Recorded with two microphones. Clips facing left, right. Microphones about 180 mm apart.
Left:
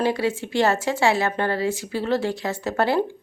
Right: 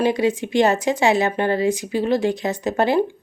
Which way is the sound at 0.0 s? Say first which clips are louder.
Right 4 dB; 20° right (ahead or behind).